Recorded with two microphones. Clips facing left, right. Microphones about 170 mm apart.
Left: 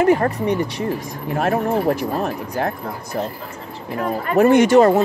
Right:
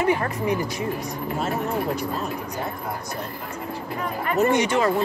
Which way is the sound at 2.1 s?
65° left (ahead or behind).